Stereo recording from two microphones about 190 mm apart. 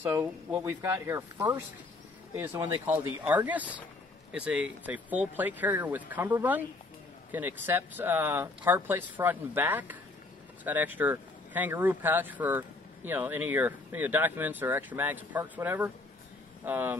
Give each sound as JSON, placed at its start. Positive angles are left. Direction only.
{"t": 0.0, "sound": "speech", "side_deg": -10}